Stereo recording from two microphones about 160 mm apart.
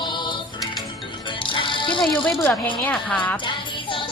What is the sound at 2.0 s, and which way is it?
Speech, 5° left (ahead or behind).